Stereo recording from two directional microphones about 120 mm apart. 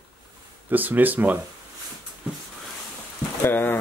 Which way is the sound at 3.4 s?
15° left (ahead or behind).